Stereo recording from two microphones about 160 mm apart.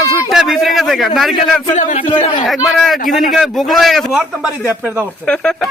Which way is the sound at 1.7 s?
50° left (ahead or behind).